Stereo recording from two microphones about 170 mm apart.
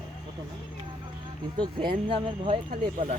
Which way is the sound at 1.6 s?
25° right (ahead or behind).